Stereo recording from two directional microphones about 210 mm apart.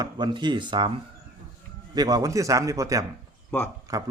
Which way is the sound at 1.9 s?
15° right (ahead or behind).